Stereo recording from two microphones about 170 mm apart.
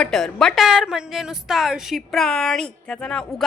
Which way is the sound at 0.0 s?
Centre (ahead or behind).